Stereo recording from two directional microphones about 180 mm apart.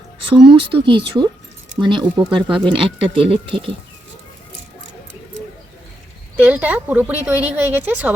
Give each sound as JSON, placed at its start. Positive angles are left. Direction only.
{"t": 0.5, "sound": "speech", "side_deg": -30}
{"t": 6.4, "sound": "a woman's voice", "side_deg": -10}